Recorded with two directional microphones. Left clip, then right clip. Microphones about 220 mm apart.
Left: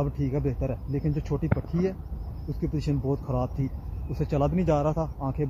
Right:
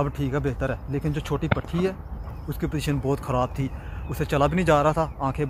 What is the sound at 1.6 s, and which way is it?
Speech, 40° right (ahead or behind).